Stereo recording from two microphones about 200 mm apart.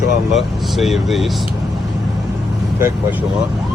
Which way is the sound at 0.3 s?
Centre (ahead or behind).